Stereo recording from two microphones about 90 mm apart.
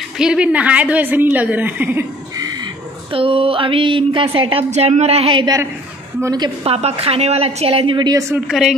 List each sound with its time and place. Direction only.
0.2 s a woman's voice: 10° right (ahead or behind)
2.3 s wild animals: 45° right (ahead or behind)
3.1 s a sound: 90° right
6.6 s a woman's voice: 90° right
8.5 s a woman's voice: 5° right (ahead or behind)